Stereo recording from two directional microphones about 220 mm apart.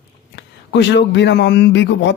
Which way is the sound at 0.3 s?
55° left (ahead or behind).